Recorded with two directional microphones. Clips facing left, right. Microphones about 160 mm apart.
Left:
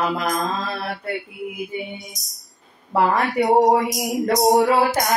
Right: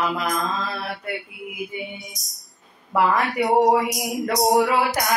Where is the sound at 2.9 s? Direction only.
35° left (ahead or behind).